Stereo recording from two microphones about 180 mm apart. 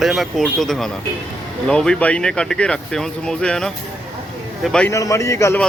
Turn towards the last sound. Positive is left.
turn(degrees=15)  # may be behind; listen again after turning